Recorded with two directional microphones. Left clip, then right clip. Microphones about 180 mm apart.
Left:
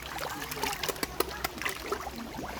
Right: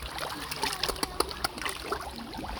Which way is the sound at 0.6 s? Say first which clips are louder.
Right 2 dB; 15° right (ahead or behind).